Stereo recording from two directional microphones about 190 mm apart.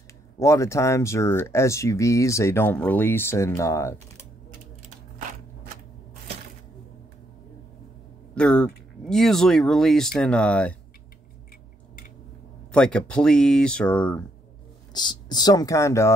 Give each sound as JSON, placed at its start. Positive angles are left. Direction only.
{"t": 0.4, "sound": "speech", "side_deg": 15}
{"t": 8.4, "sound": "speech", "side_deg": 5}
{"t": 12.7, "sound": "speech", "side_deg": 5}
{"t": 14.9, "sound": "speech", "side_deg": 20}